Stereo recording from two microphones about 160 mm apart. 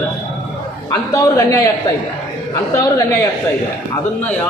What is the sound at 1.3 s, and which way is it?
Speech, 20° left (ahead or behind).